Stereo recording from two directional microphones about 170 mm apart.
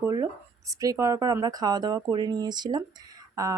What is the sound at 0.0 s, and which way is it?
Speech, 20° right (ahead or behind).